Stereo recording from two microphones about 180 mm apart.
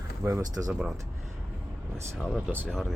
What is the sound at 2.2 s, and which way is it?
Speech, 5° left (ahead or behind).